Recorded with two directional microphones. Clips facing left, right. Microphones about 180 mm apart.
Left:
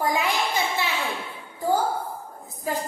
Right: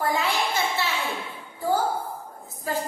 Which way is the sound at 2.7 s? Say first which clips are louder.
Even; 15° left (ahead or behind).